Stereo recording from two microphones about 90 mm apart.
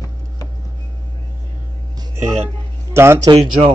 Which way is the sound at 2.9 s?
30° right (ahead or behind).